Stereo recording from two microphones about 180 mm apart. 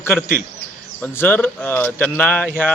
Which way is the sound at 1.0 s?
10° left (ahead or behind).